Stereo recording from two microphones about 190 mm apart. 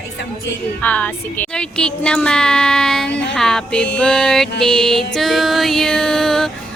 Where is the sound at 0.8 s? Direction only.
5° left (ahead or behind).